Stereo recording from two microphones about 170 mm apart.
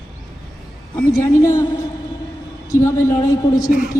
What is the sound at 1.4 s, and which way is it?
A man's voice, 20° left (ahead or behind).